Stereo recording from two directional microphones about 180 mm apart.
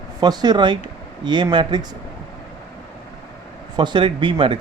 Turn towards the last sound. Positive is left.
turn(degrees=-30)  # may be behind; listen again after turning